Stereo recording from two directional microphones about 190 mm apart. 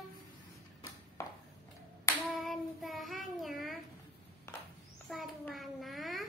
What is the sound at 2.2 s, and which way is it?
Child singing, centre (ahead or behind).